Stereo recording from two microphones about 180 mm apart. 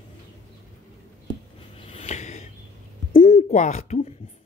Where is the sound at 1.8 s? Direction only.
35° left (ahead or behind).